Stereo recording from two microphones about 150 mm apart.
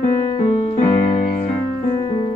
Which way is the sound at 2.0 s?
35° left (ahead or behind).